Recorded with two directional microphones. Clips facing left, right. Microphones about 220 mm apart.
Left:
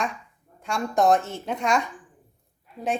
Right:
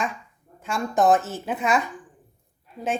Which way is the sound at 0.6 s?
Centre (ahead or behind).